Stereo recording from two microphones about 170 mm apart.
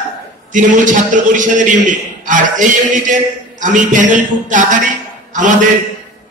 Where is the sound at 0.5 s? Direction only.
50° right (ahead or behind).